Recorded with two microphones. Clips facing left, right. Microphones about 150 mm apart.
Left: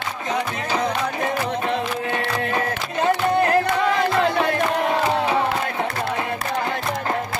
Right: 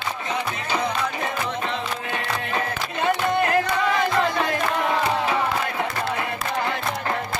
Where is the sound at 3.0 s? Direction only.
35° left (ahead or behind).